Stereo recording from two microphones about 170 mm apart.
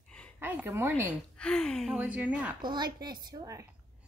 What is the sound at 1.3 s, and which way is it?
Speech, 5° left (ahead or behind).